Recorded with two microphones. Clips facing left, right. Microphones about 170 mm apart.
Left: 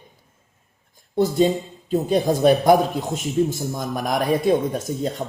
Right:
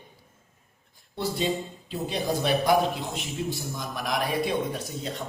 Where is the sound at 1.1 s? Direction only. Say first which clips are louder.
Left 9 dB; 45° left (ahead or behind).